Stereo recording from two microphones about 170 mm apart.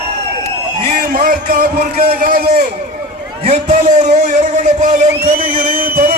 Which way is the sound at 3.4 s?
40° right (ahead or behind).